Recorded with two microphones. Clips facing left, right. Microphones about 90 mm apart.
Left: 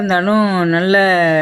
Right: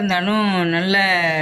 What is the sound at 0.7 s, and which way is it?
Speech, 40° left (ahead or behind).